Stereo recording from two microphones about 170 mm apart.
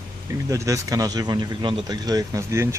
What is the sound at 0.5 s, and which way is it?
Speech, 20° right (ahead or behind).